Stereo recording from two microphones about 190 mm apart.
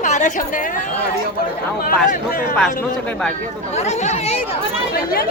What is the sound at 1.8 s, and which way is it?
Speech, 50° left (ahead or behind).